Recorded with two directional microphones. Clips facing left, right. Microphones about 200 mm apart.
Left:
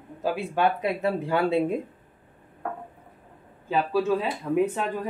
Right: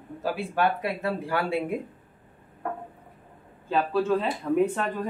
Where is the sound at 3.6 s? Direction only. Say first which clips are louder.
Left 1 dB; 10° left (ahead or behind).